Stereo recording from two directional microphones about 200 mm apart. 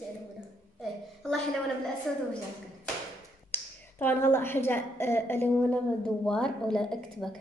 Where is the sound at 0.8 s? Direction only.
Centre (ahead or behind).